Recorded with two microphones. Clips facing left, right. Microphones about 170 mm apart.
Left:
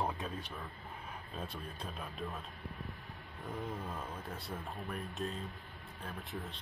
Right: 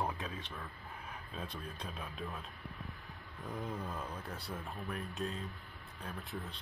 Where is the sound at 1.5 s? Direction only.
5° left (ahead or behind).